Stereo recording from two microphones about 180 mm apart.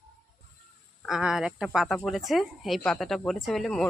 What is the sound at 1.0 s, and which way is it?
Speech, 5° right (ahead or behind).